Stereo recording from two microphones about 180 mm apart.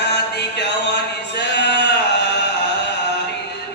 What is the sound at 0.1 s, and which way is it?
Music, 70° left (ahead or behind).